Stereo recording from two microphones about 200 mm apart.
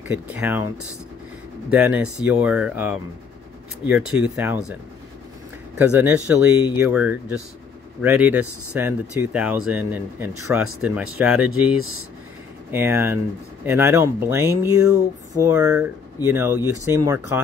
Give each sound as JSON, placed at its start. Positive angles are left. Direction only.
{"t": 0.1, "sound": "speech", "side_deg": -10}
{"t": 1.7, "sound": "speech", "side_deg": -5}
{"t": 5.8, "sound": "speech", "side_deg": -10}
{"t": 12.7, "sound": "speech", "side_deg": -10}